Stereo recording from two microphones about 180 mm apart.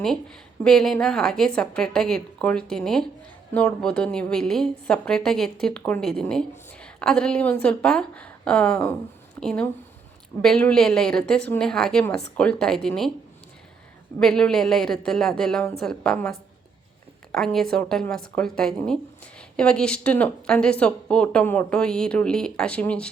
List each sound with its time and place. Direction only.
0.0 s a woman's voice: 5° left (ahead or behind)
14.2 s a woman's voice: 5° left (ahead or behind)